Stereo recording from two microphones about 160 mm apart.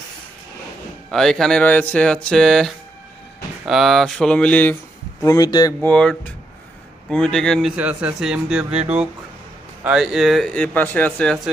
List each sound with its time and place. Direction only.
1.1 s speech: centre (ahead or behind)
5.2 s speech: 20° left (ahead or behind)
5.8 s speech: 5° left (ahead or behind)
7.8 s speech: 10° right (ahead or behind)